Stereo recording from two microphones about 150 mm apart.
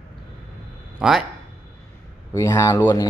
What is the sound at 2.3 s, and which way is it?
Speech, 20° left (ahead or behind).